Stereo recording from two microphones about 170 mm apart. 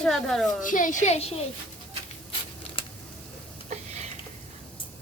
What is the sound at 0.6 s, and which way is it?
Speech, 50° left (ahead or behind).